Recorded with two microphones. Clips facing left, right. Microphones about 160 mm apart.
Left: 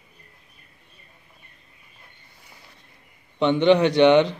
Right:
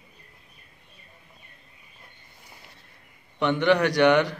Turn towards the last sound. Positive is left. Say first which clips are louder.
# left 4 dB
turn(degrees=20)  # may be behind; listen again after turning